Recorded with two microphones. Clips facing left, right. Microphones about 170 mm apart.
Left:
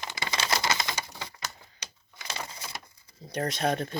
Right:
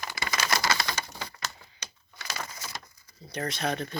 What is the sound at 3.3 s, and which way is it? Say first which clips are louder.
Speech: left 3 dB; 50° left (ahead or behind).